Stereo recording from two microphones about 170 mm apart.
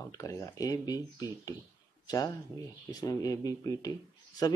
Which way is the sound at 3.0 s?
20° left (ahead or behind).